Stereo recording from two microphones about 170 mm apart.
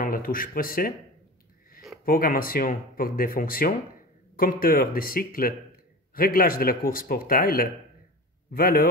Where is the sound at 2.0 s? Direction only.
55° left (ahead or behind).